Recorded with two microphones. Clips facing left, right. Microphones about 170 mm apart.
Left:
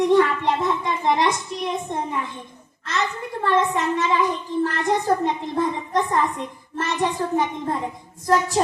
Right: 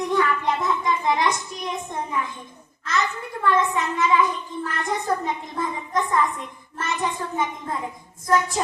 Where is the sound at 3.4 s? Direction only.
30° left (ahead or behind).